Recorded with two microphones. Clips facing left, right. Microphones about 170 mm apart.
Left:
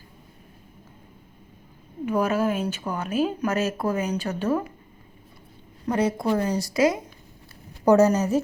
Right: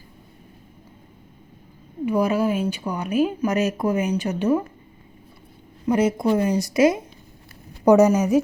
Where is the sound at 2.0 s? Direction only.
10° right (ahead or behind).